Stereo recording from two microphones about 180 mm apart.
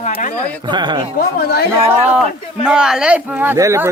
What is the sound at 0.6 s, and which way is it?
Speech, 25° right (ahead or behind).